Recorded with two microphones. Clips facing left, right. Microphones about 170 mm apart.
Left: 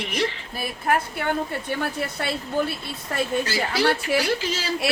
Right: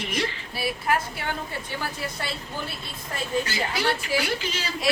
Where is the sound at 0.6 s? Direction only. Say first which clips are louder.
Left 1 dB; 50° left (ahead or behind).